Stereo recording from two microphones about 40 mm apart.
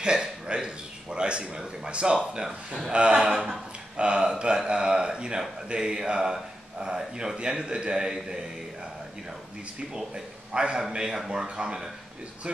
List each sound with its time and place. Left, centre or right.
0.0 s speech: right
9.9 s a man's voice: centre